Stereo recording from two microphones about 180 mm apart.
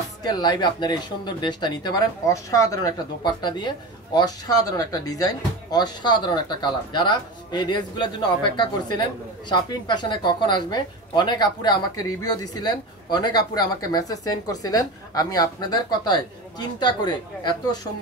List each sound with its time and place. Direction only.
0.2 s speech: 20° left (ahead or behind)